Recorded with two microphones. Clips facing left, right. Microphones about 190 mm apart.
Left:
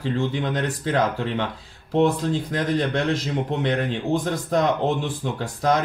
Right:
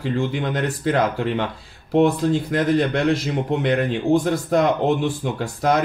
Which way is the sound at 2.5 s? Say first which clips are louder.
Right 3 dB; 10° right (ahead or behind).